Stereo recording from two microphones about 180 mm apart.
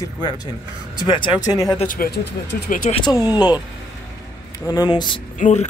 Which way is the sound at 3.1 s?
20° left (ahead or behind).